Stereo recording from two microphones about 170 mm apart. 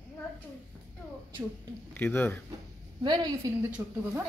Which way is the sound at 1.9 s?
10° left (ahead or behind).